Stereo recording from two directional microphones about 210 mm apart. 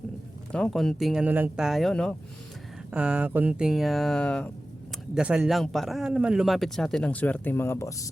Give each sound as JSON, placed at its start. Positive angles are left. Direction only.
{"t": 0.5, "sound": "a man's voice", "side_deg": 5}